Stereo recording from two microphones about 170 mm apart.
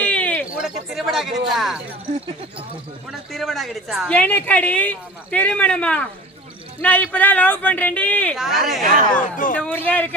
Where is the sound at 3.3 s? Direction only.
Centre (ahead or behind).